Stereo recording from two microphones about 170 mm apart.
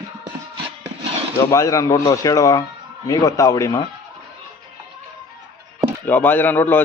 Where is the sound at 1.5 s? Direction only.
20° left (ahead or behind).